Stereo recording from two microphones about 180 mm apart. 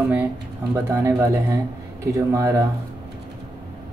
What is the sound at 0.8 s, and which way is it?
Speech, 10° right (ahead or behind).